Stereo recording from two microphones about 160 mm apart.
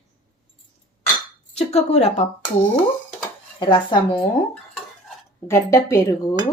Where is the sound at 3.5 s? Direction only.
30° left (ahead or behind).